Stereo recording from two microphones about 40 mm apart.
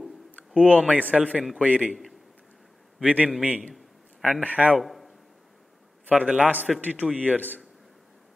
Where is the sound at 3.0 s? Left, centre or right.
Right.